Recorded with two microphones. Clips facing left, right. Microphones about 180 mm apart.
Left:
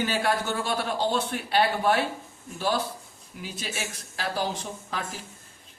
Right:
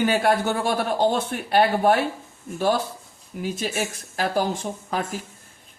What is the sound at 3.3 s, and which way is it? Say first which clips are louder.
A man's voice: right 9 dB; 50° right (ahead or behind).